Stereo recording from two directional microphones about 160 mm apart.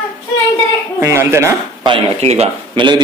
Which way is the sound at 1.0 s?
15° right (ahead or behind).